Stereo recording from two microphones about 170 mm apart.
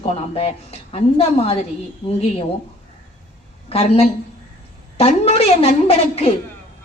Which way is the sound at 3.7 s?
35° left (ahead or behind).